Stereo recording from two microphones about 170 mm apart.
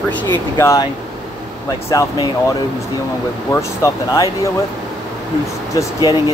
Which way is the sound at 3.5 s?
20° left (ahead or behind).